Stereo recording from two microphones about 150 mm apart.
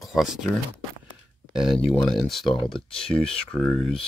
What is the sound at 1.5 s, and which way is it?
Speech, 5° right (ahead or behind).